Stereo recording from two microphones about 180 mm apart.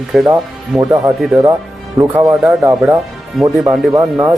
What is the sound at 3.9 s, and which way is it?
Speech, 15° right (ahead or behind).